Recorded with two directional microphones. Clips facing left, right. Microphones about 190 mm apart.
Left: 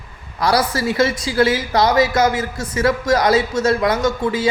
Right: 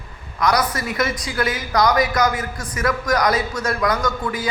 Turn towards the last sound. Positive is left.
turn(degrees=25)  # may be behind; listen again after turning